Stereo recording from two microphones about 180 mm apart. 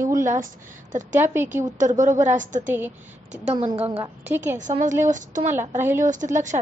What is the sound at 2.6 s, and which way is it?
Speech, 10° right (ahead or behind).